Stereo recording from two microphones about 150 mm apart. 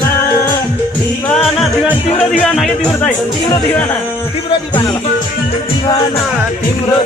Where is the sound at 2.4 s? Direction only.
5° left (ahead or behind).